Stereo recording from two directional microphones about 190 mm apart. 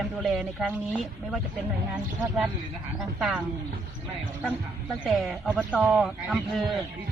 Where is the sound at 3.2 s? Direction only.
5° right (ahead or behind).